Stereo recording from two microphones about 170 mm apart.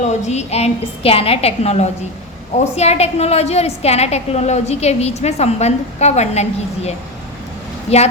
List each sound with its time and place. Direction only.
0.0 s a woman's voice: 45° left (ahead or behind)